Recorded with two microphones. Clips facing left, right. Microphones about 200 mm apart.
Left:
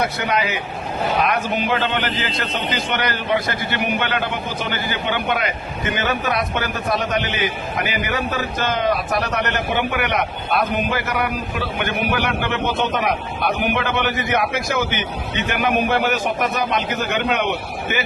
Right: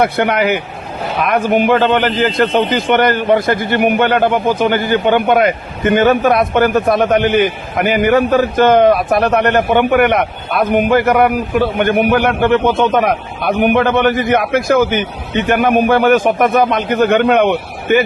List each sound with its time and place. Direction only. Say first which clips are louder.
0.0 s a man's voice: right 8 dB; 60° right (ahead or behind)